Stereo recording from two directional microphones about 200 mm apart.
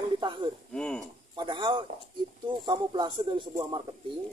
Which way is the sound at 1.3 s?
25° right (ahead or behind).